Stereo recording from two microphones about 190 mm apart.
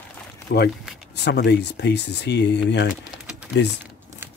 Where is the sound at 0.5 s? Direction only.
55° left (ahead or behind).